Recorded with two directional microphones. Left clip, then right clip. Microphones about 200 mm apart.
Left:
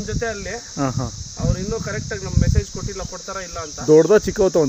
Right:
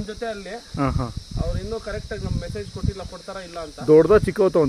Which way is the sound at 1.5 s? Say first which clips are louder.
Left 3 dB; 30° left (ahead or behind).